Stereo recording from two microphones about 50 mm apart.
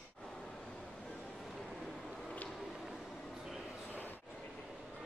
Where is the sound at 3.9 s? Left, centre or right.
Left.